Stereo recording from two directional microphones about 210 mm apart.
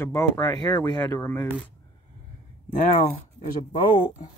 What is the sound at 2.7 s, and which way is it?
Speech, 35° left (ahead or behind).